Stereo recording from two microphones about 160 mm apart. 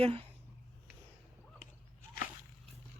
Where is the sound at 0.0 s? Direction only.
35° right (ahead or behind).